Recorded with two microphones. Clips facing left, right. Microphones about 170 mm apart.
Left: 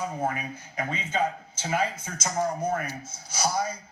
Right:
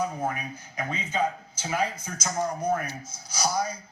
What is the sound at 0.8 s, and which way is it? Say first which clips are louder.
Speech: even; 25° left (ahead or behind).